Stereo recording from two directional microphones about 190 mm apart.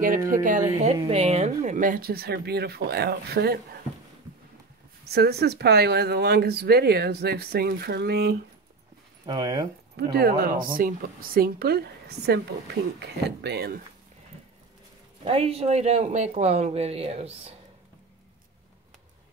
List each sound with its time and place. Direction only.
0.3 s speech: 45° right (ahead or behind)
5.0 s speech: 55° right (ahead or behind)
9.2 s speech: 20° right (ahead or behind)
10.1 s speech: 55° right (ahead or behind)
15.2 s speech: 30° right (ahead or behind)